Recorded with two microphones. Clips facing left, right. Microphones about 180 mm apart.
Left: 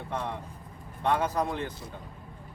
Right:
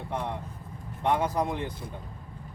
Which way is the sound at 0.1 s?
15° right (ahead or behind).